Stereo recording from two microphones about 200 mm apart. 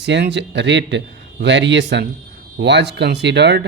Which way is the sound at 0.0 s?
60° right (ahead or behind).